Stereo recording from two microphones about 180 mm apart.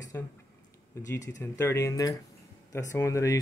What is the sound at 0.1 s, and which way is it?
Speech, 15° left (ahead or behind).